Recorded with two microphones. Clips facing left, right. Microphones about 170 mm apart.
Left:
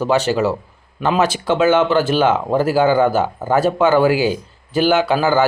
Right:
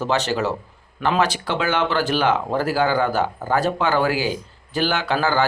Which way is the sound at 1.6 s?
20° left (ahead or behind).